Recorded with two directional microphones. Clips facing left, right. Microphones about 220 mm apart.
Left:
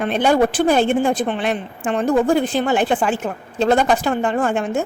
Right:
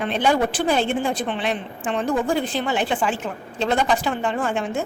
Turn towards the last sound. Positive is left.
turn(degrees=45)  # may be behind; listen again after turning